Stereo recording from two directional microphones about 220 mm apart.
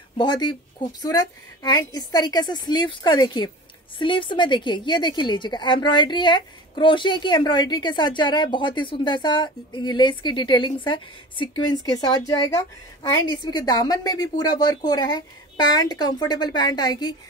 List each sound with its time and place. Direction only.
0.2 s a woman's voice: 20° left (ahead or behind)